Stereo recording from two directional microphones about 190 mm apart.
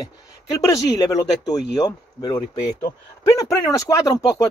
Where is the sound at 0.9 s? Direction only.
20° left (ahead or behind).